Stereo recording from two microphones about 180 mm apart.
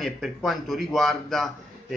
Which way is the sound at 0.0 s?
Centre (ahead or behind).